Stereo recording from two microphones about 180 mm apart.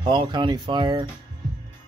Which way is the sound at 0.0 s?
25° right (ahead or behind).